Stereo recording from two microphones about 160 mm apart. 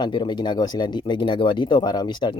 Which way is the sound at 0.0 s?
30° left (ahead or behind).